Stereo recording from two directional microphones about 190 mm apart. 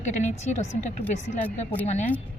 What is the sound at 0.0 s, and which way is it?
Speech, 40° left (ahead or behind).